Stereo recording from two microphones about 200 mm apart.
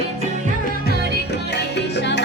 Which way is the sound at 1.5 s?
60° left (ahead or behind).